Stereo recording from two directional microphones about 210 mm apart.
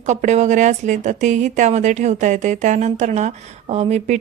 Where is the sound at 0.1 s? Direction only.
35° right (ahead or behind).